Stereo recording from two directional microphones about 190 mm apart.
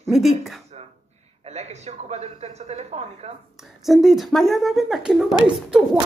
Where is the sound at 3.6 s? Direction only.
Centre (ahead or behind).